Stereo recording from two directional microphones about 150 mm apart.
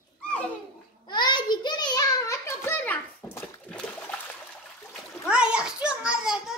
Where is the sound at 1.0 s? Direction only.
30° left (ahead or behind); by 3.7 s 15° left (ahead or behind).